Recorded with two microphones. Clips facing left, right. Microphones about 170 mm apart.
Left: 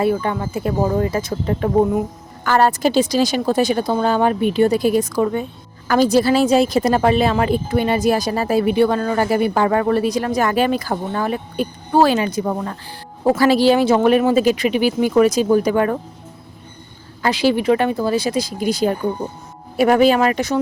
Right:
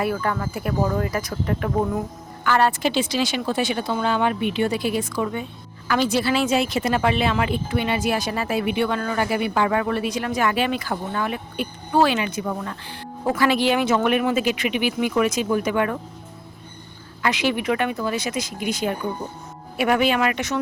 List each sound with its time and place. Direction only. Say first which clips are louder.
0.0 s speech: left 5 dB; 25° left (ahead or behind)
2.4 s speech: left 4 dB; 40° left (ahead or behind)
17.2 s speech: left 6 dB; 35° left (ahead or behind)